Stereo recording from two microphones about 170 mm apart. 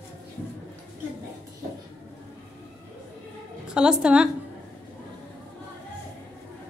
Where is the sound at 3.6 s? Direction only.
5° right (ahead or behind).